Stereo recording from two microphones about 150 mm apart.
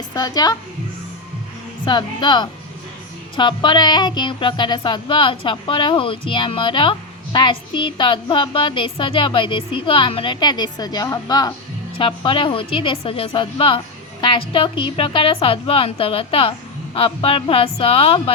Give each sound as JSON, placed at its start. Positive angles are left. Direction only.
{"t": 0.1, "sound": "a woman's voice", "side_deg": 25}
{"t": 1.8, "sound": "a woman's voice", "side_deg": 30}